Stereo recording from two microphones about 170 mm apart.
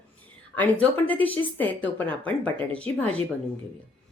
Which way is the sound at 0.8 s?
10° left (ahead or behind).